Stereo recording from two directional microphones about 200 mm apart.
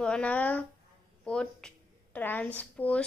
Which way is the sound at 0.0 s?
5° left (ahead or behind).